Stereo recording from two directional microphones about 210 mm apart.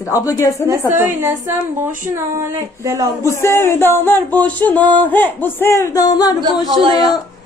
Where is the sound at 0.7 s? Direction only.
10° right (ahead or behind).